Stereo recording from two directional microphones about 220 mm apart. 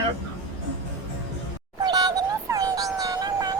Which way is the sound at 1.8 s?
15° right (ahead or behind).